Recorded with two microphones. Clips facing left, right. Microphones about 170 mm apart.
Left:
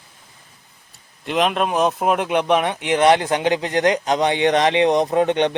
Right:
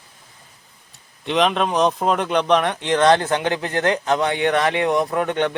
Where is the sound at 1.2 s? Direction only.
5° left (ahead or behind).